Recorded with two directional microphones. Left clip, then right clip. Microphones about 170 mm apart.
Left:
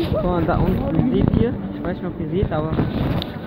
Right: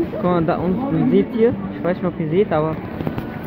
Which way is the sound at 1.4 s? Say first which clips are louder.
Right 6 dB; 20° right (ahead or behind).